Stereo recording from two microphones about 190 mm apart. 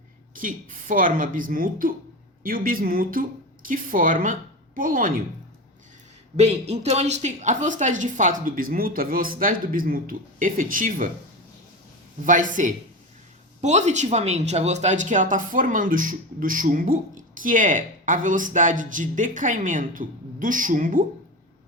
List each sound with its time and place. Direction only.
0.3 s a woman's voice: 45° right (ahead or behind)
6.3 s speech: 35° right (ahead or behind)
12.2 s speech: 45° right (ahead or behind)